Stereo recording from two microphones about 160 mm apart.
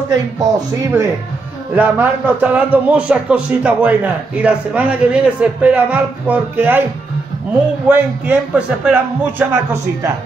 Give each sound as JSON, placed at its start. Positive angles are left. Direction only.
{"t": 0.1, "sound": "speech", "side_deg": -20}
{"t": 1.8, "sound": "a man's voice", "side_deg": -10}
{"t": 7.9, "sound": "a man's voice", "side_deg": -10}